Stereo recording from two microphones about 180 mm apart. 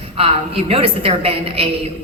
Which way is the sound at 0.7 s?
35° right (ahead or behind).